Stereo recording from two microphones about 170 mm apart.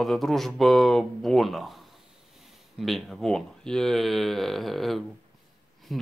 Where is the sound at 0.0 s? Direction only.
Centre (ahead or behind).